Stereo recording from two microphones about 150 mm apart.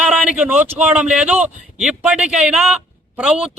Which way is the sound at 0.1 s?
10° right (ahead or behind).